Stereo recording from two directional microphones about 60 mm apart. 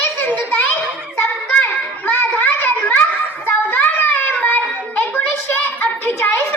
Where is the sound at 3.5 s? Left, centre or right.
Left.